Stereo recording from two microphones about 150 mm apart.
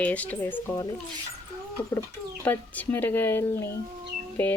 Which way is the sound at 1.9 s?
15° left (ahead or behind).